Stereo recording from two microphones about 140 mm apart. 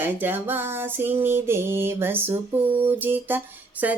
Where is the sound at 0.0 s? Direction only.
15° right (ahead or behind).